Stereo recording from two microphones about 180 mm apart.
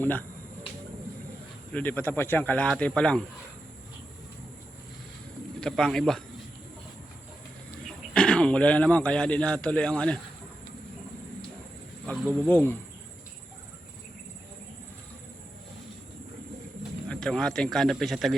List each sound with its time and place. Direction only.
0.0 s speech: 10° left (ahead or behind)
1.7 s speech: 10° left (ahead or behind)
5.5 s a man's voice: 5° left (ahead or behind)
8.1 s a man's voice: 5° left (ahead or behind)
12.0 s speech: 5° left (ahead or behind)
17.1 s a man's voice: 5° left (ahead or behind)